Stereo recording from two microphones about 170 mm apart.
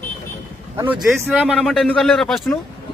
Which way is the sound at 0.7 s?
15° right (ahead or behind).